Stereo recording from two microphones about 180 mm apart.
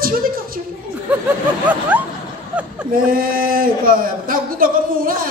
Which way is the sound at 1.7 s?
10° right (ahead or behind).